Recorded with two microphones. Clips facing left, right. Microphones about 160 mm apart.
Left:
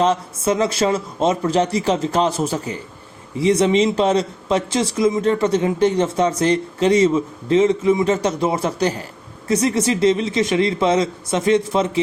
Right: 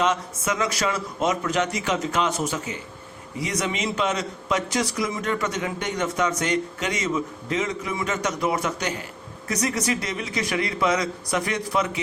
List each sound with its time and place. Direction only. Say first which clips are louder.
0.0 s a man's voice: left 6 dB; 30° left (ahead or behind)